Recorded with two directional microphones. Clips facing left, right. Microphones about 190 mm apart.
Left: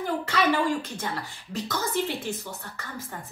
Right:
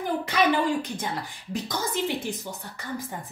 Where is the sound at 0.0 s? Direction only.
15° right (ahead or behind).